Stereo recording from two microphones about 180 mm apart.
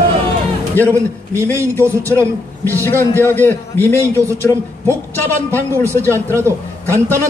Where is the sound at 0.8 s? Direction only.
15° right (ahead or behind).